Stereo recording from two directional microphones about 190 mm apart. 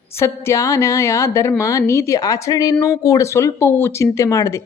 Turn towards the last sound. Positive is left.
turn(degrees=15)  # may be behind; listen again after turning